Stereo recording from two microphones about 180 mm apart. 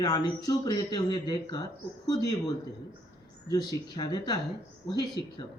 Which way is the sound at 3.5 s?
25° left (ahead or behind).